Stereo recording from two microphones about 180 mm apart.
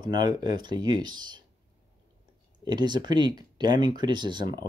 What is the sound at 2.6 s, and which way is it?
Speech, 25° right (ahead or behind).